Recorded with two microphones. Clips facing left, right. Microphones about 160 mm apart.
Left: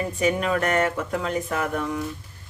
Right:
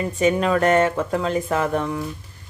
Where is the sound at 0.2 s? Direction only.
30° right (ahead or behind).